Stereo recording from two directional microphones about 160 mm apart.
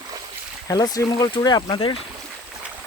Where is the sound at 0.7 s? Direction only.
25° left (ahead or behind).